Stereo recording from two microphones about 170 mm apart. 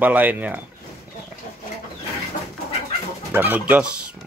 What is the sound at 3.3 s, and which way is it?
Speech, 10° right (ahead or behind).